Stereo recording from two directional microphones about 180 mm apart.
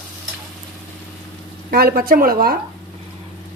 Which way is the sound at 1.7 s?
60° right (ahead or behind).